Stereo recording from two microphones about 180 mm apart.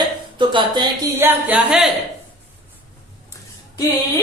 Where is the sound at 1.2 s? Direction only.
10° right (ahead or behind).